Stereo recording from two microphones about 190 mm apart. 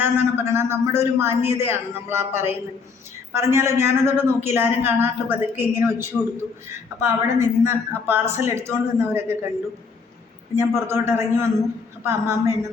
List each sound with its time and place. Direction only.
0.0 s a woman's voice: 10° right (ahead or behind)
10.5 s a woman's voice: 15° right (ahead or behind)